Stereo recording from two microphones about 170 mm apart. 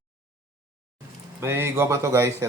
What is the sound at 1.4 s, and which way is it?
A man's voice, 15° right (ahead or behind).